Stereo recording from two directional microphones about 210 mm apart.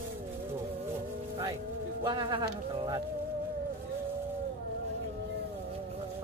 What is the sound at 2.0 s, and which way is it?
Speech, 25° right (ahead or behind).